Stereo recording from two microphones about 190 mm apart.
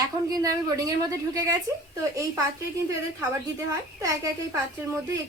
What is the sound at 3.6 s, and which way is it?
Speech, 20° right (ahead or behind).